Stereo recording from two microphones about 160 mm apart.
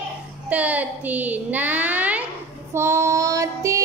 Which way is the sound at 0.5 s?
10° right (ahead or behind).